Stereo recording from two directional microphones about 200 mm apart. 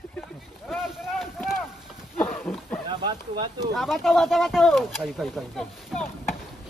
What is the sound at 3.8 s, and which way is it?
Speech, centre (ahead or behind).